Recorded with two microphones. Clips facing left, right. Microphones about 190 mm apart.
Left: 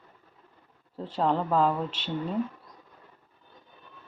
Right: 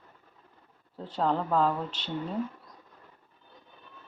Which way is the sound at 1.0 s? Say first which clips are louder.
Left 2 dB; centre (ahead or behind).